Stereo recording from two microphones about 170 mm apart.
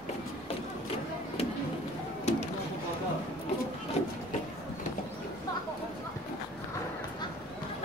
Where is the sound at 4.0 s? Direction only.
40° left (ahead or behind).